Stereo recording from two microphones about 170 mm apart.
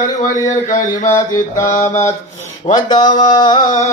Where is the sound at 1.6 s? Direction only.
45° left (ahead or behind).